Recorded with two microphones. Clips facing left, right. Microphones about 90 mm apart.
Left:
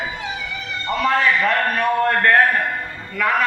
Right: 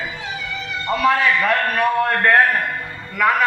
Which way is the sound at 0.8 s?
10° right (ahead or behind).